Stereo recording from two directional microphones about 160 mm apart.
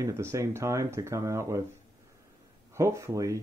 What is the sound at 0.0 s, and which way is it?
Speech, 15° right (ahead or behind).